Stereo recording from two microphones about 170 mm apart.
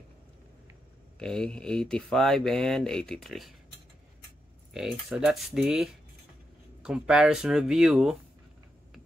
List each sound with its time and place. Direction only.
1.2 s speech: 5° left (ahead or behind)
4.7 s speech: 5° right (ahead or behind)